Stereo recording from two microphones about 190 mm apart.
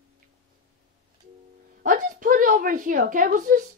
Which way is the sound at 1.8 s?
45° right (ahead or behind).